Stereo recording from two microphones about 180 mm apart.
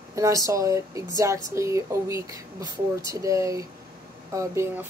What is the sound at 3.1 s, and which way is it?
Speech, 20° right (ahead or behind).